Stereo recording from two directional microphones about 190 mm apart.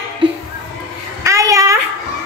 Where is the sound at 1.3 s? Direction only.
15° right (ahead or behind).